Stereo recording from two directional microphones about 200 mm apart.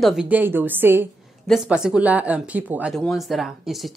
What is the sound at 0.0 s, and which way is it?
A woman's voice, 5° right (ahead or behind).